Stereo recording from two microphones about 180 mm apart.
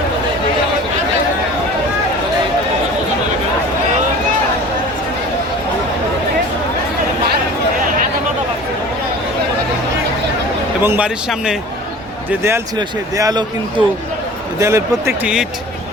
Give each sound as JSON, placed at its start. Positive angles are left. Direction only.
{"t": 10.8, "sound": "speech", "side_deg": -10}